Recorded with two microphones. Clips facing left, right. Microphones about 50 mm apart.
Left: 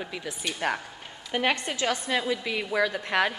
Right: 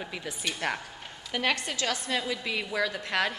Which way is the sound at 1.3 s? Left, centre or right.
Centre.